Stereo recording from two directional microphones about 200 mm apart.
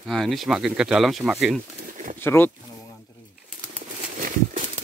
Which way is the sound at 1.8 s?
40° right (ahead or behind).